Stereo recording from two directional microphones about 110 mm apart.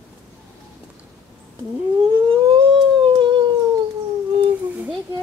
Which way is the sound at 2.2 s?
50° right (ahead or behind).